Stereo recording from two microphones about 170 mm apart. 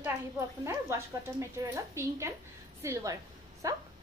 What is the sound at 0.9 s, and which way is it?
A woman's voice, 15° right (ahead or behind).